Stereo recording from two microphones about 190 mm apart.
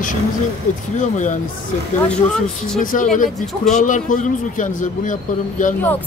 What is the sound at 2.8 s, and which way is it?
Speech, 45° left (ahead or behind).